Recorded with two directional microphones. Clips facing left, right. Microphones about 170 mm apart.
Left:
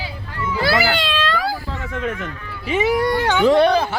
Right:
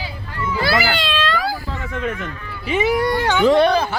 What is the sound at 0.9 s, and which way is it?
Speech, 15° left (ahead or behind).